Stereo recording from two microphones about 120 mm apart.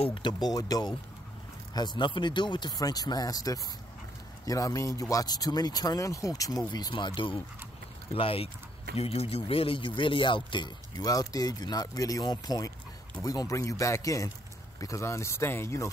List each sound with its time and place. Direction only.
0.0 s speech: 40° left (ahead or behind)
2.0 s speech: 40° left (ahead or behind); by 15.9 s 20° left (ahead or behind)